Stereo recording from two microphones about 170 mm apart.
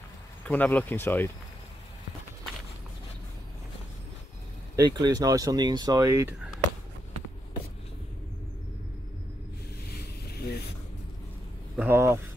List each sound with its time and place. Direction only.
0.5 s speech: 10° left (ahead or behind)
4.7 s speech: 25° right (ahead or behind)
10.2 s vehicle: 70° left (ahead or behind)
11.7 s speech: 10° right (ahead or behind)